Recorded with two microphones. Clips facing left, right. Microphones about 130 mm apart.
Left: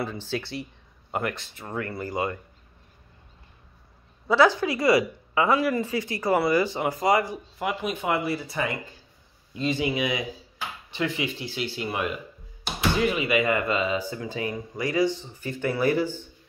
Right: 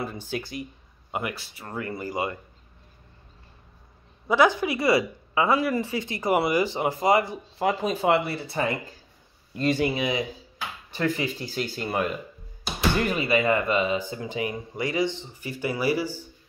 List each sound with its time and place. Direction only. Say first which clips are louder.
0.0 s speech: left 1 dB; 15° right (ahead or behind)
4.3 s speech: left 1 dB; 15° right (ahead or behind)
7.5 s speech: right 4 dB; 35° right (ahead or behind)
9.6 s speech: right 2 dB; 50° right (ahead or behind)
9.9 s speech: right 1 dB; 25° right (ahead or behind)
10.9 s speech: right 2 dB; 40° right (ahead or behind); by 16.3 s 10° right (ahead or behind)